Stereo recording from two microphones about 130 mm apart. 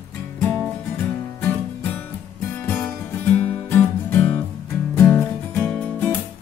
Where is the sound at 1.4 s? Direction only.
15° left (ahead or behind).